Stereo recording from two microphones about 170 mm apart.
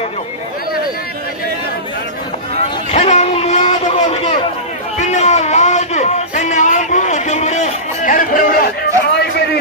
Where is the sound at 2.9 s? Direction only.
40° left (ahead or behind).